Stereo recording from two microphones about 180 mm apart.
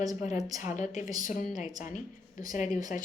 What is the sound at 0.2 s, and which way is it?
A woman's voice, 40° left (ahead or behind).